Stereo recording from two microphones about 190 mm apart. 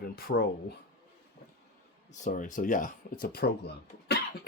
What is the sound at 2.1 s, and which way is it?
Speech, 40° left (ahead or behind).